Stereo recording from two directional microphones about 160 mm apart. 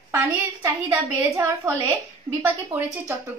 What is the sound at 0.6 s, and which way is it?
A child's voice, 20° right (ahead or behind).